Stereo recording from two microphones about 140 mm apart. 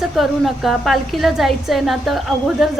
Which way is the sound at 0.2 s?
Centre (ahead or behind).